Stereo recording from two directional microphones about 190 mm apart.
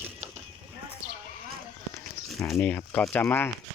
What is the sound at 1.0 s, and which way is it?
Horse, 40° right (ahead or behind).